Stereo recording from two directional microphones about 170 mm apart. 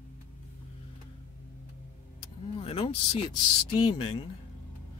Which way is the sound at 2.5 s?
35° left (ahead or behind).